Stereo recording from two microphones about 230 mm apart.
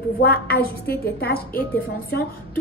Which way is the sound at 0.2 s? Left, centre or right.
Left.